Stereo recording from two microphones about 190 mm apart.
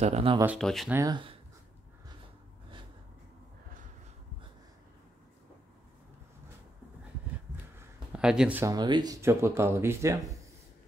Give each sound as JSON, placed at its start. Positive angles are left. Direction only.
{"t": 0.0, "sound": "speech", "side_deg": -30}
{"t": 0.6, "sound": "speech", "side_deg": 0}
{"t": 0.9, "sound": "speech", "side_deg": -20}
{"t": 8.1, "sound": "speech", "side_deg": -5}
{"t": 8.7, "sound": "speech", "side_deg": -20}